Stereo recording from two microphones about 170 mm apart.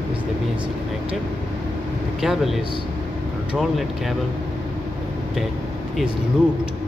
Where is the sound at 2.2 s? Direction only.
Centre (ahead or behind).